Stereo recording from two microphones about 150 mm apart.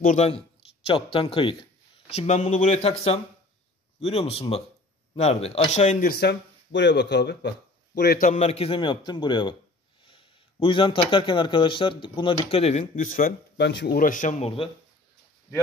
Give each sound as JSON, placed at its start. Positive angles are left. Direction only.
{"t": 0.0, "sound": "speech", "side_deg": 55}
{"t": 0.8, "sound": "a man's voice", "side_deg": 40}
{"t": 6.0, "sound": "speech", "side_deg": 90}
{"t": 8.3, "sound": "a man's voice", "side_deg": 45}
{"t": 12.9, "sound": "speech", "side_deg": 65}